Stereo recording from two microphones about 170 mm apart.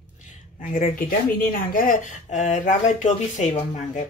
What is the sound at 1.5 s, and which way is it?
Speech, 55° left (ahead or behind).